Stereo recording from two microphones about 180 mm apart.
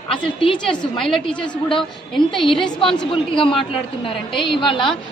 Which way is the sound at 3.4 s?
30° left (ahead or behind).